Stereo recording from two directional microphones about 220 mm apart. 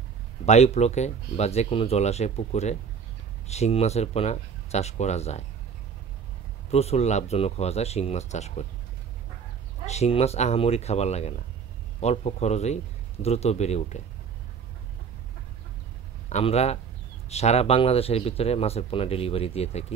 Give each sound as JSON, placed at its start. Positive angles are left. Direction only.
{"t": 0.5, "sound": "speech", "side_deg": 30}
{"t": 6.7, "sound": "speech", "side_deg": 30}
{"t": 9.8, "sound": "speech", "side_deg": 30}
{"t": 16.3, "sound": "speech", "side_deg": 30}